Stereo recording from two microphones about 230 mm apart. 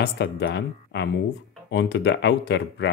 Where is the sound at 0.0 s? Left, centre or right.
Left.